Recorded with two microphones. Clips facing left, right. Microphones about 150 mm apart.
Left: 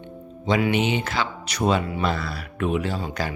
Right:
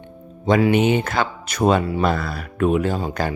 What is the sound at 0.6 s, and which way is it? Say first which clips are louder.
Speech: right 6 dB; 45° right (ahead or behind).